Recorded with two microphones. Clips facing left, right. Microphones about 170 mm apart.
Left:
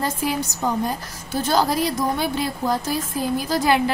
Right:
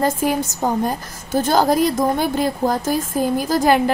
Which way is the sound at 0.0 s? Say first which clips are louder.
Right 5 dB; 50° right (ahead or behind).